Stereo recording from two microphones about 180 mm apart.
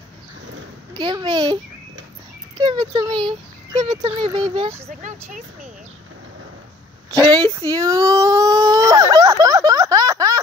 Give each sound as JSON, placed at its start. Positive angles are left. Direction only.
{"t": 0.9, "sound": "speech", "side_deg": -25}
{"t": 4.8, "sound": "speech", "side_deg": -40}
{"t": 7.1, "sound": "baby cry", "side_deg": -25}